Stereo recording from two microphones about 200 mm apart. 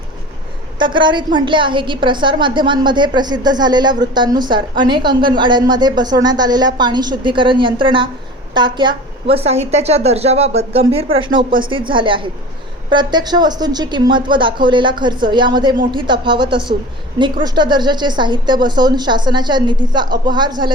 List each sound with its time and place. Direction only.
0.8 s a woman's voice: 25° right (ahead or behind)